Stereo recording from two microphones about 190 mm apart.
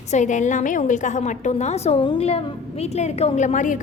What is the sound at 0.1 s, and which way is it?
A woman's voice, 40° left (ahead or behind).